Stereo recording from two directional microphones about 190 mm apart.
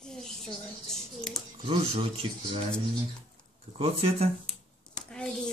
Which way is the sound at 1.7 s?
30° right (ahead or behind).